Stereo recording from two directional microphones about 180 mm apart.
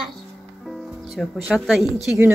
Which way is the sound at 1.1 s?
5° right (ahead or behind).